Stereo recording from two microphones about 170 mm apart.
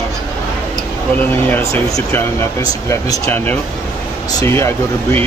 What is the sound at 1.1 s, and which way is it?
Speech, 10° left (ahead or behind).